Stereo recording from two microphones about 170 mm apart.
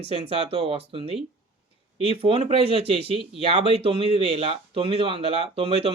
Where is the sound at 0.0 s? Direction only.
35° right (ahead or behind).